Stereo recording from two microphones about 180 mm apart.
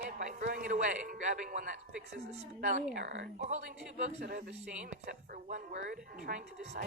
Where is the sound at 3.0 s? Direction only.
80° right.